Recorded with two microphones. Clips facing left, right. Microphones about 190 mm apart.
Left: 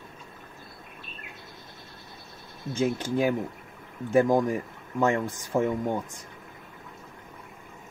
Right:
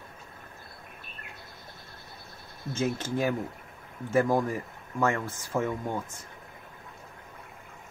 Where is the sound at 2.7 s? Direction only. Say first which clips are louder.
Left 3 dB; 15° left (ahead or behind).